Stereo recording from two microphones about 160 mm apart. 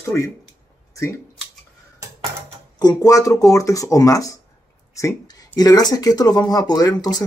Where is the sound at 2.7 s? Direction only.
25° left (ahead or behind).